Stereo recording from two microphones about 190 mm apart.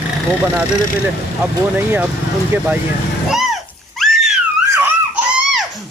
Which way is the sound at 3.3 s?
Centre (ahead or behind).